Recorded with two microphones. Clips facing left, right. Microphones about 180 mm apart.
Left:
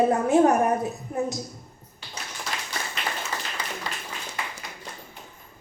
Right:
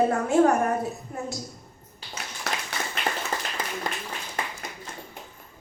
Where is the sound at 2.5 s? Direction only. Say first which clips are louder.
Right 3 dB; 70° right (ahead or behind).